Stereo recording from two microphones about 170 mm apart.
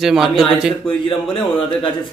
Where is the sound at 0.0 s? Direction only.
Centre (ahead or behind).